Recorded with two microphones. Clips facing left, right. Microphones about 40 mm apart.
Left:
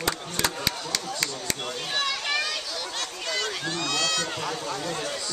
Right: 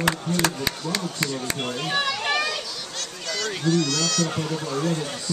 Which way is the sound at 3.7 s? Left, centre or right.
Centre.